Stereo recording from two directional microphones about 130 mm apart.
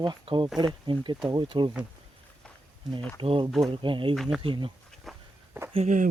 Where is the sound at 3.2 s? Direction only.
45° right (ahead or behind).